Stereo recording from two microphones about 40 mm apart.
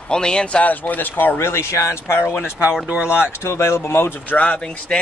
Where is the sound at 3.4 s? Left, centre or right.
Left.